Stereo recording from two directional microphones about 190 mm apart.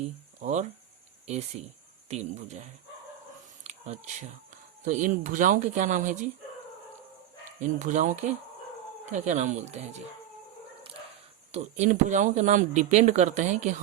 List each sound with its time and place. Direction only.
0.3 s speech: 40° right (ahead or behind)
3.6 s a sound: 35° right (ahead or behind)
4.9 s speech: 45° right (ahead or behind)
7.6 s speech: 40° right (ahead or behind)
11.5 s speech: 35° right (ahead or behind)